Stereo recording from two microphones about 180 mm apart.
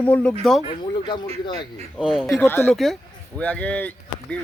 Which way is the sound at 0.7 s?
25° left (ahead or behind).